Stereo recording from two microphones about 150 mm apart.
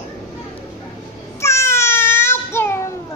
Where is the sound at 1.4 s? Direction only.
20° left (ahead or behind).